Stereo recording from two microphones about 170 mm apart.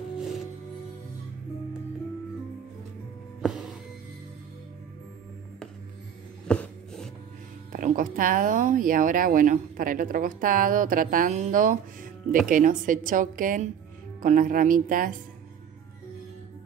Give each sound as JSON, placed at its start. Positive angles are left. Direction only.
{"t": 3.4, "sound": "music", "side_deg": -5}
{"t": 6.4, "sound": "a sound", "side_deg": 5}
{"t": 7.7, "sound": "speech", "side_deg": -55}